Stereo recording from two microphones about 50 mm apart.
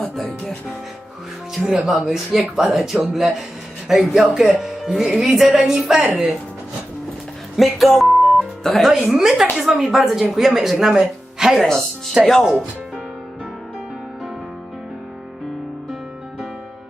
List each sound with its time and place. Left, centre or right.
0.0 s music: centre
1.8 s speech: centre
5.1 s a woman's voice: centre
5.4 s a woman's voice: centre
7.5 s music: centre
9.0 s a woman's voice: centre
12.2 s speech: centre